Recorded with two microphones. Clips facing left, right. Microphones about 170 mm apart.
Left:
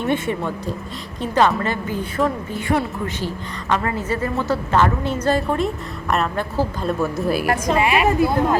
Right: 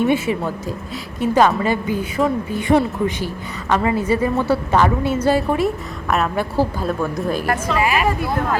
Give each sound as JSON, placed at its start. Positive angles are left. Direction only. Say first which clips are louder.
{"t": 0.1, "sound": "a woman's voice", "louder": "right 3 dB", "side_deg": -5}
{"t": 7.0, "sound": "a woman's voice", "louder": "left 3 dB", "side_deg": 5}
{"t": 7.7, "sound": "speech", "louder": "left 2 dB", "side_deg": 25}